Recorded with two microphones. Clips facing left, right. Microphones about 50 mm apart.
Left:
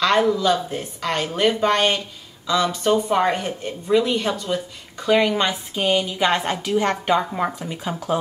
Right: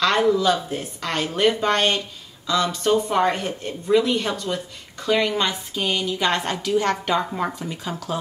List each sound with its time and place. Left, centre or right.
0.0 s a woman's voice: centre